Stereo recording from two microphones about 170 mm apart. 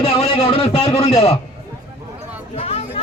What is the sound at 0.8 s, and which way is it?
Speech, 35° left (ahead or behind).